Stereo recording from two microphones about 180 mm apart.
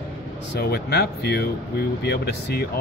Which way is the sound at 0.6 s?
65° left (ahead or behind).